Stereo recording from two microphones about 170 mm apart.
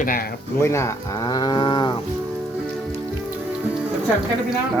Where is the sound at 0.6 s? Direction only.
15° left (ahead or behind).